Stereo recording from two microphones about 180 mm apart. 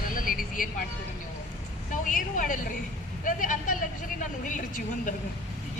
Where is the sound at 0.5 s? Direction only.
50° left (ahead or behind).